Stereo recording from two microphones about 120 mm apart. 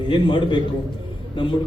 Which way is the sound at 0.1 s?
40° left (ahead or behind).